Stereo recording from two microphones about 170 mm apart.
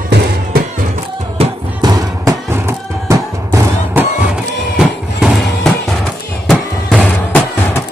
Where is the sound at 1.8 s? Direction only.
20° right (ahead or behind).